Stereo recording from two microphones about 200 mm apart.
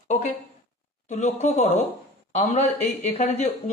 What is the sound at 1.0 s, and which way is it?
A man's voice, 35° left (ahead or behind).